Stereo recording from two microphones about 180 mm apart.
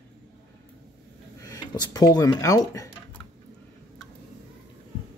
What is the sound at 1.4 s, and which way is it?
Speech, 20° left (ahead or behind).